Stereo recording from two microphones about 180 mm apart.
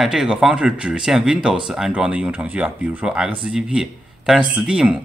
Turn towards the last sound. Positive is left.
turn(degrees=-5)  # may be behind; listen again after turning